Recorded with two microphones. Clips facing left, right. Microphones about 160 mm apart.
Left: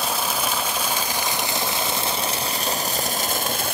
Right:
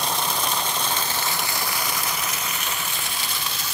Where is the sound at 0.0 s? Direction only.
5° left (ahead or behind).